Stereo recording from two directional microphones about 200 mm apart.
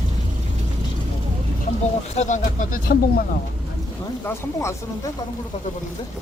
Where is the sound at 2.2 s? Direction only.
40° left (ahead or behind).